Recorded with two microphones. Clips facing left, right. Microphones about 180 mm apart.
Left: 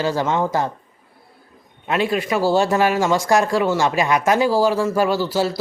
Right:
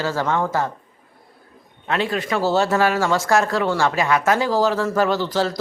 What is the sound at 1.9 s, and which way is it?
A man's voice, 15° left (ahead or behind).